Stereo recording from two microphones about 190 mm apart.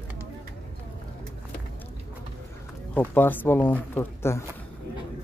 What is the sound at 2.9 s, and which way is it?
Speech, 10° left (ahead or behind).